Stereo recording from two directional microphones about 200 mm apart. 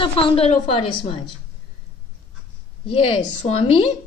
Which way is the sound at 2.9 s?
25° left (ahead or behind).